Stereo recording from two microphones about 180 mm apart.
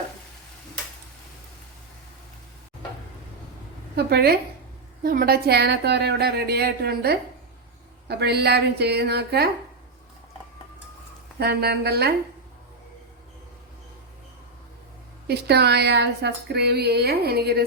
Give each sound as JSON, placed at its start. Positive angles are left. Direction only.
{"t": 3.9, "sound": "speech", "side_deg": -60}
{"t": 11.3, "sound": "speech", "side_deg": -65}
{"t": 15.3, "sound": "speech", "side_deg": -65}